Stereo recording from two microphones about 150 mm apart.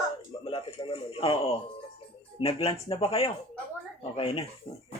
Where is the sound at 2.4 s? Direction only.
40° left (ahead or behind).